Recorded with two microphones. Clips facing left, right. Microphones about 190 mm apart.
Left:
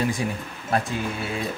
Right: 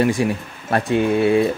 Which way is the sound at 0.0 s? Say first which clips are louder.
Right 7 dB; 70° right (ahead or behind).